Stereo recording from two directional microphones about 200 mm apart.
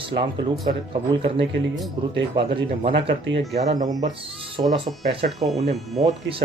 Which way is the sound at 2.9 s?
60° right (ahead or behind).